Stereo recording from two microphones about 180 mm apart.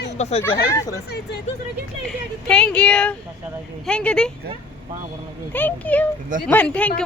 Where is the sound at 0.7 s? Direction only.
20° left (ahead or behind).